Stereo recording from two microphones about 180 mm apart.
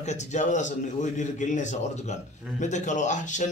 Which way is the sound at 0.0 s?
40° left (ahead or behind).